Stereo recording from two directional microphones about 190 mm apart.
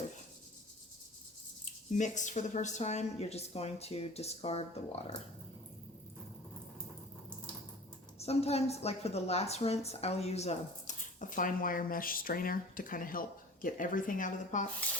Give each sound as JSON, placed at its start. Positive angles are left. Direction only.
{"t": 1.9, "sound": "a woman's voice", "side_deg": 40}
{"t": 8.2, "sound": "a woman's voice", "side_deg": 35}